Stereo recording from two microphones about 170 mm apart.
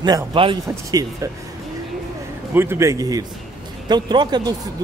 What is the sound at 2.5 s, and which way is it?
Speech, 15° right (ahead or behind).